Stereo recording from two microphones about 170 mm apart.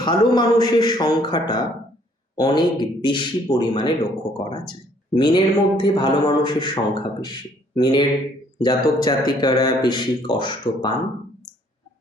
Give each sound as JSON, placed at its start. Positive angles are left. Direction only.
{"t": 0.0, "sound": "speech", "side_deg": 25}